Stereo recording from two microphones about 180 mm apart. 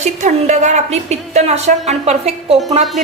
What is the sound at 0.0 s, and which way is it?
A woman's voice, 40° right (ahead or behind).